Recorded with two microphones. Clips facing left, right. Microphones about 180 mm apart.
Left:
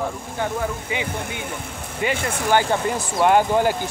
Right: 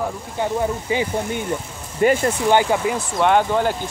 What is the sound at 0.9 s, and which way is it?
Speech, 35° right (ahead or behind).